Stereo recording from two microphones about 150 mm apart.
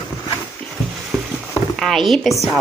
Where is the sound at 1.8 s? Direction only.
Centre (ahead or behind).